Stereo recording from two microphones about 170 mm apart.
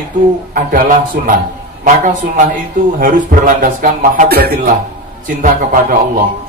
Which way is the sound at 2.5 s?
55° right (ahead or behind).